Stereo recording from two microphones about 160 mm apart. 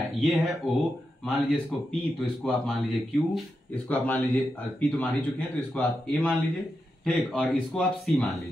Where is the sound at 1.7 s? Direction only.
Centre (ahead or behind).